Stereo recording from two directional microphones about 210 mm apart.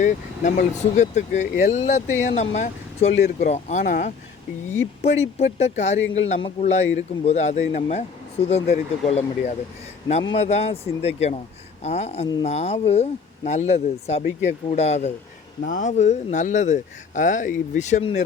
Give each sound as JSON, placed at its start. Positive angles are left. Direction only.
{"t": 0.0, "sound": "a man's voice", "side_deg": 35}